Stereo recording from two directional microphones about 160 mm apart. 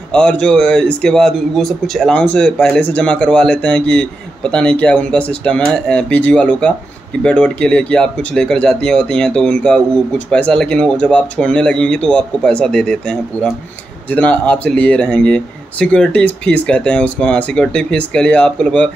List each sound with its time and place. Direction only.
0.1 s speech: 5° left (ahead or behind)